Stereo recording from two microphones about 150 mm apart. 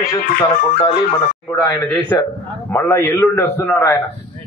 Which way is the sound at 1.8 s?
10° left (ahead or behind).